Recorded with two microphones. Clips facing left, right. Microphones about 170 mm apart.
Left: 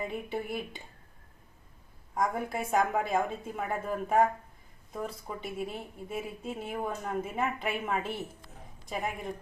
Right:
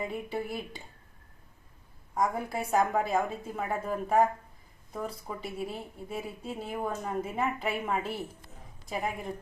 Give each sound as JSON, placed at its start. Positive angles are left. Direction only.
{"t": 0.0, "sound": "a woman's voice", "side_deg": 0}
{"t": 2.1, "sound": "a woman's voice", "side_deg": -5}